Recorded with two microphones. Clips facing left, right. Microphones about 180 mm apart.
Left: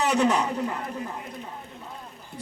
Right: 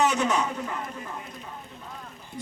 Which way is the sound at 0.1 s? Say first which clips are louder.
Left 3 dB; 35° left (ahead or behind).